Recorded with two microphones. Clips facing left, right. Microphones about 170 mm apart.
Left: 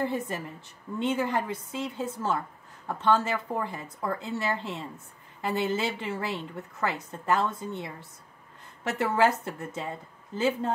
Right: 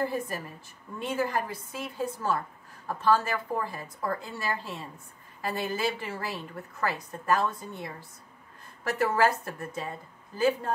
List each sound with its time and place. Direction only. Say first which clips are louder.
0.0 s a woman's voice: left 1 dB; 25° left (ahead or behind)